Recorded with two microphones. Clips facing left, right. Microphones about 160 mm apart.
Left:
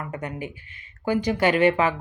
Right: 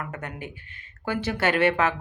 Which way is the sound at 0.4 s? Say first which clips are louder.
Left 4 dB; 50° right (ahead or behind).